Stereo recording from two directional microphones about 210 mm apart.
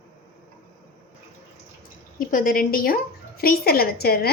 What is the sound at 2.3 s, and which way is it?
A woman's voice, 40° left (ahead or behind).